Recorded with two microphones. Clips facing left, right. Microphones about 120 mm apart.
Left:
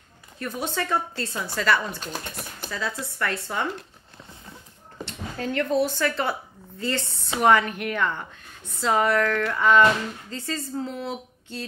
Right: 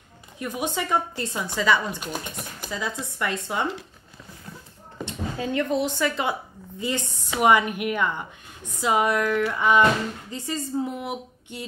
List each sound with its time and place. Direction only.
0.4 s speech: 15° right (ahead or behind)
5.0 s speech: 15° right (ahead or behind)